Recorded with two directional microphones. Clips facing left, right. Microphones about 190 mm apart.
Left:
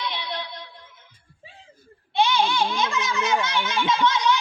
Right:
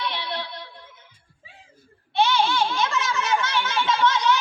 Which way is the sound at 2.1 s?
15° left (ahead or behind).